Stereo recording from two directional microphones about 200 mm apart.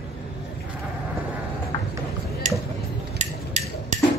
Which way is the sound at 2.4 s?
35° right (ahead or behind).